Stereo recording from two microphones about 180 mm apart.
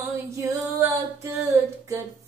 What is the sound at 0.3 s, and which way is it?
Female singing, 20° right (ahead or behind).